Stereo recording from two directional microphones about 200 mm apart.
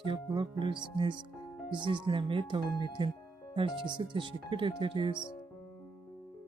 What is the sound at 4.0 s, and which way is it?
Speech, 25° right (ahead or behind).